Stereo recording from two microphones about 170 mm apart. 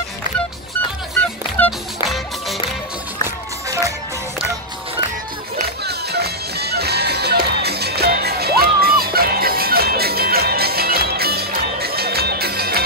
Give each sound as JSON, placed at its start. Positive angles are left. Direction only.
{"t": 1.6, "sound": "music", "side_deg": 10}
{"t": 3.6, "sound": "music", "side_deg": -20}
{"t": 5.9, "sound": "music", "side_deg": -70}